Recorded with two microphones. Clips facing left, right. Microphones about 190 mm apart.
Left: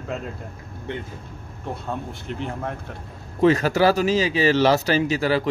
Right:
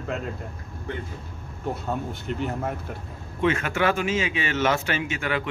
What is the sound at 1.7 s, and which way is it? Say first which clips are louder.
Speech: right 1 dB; centre (ahead or behind).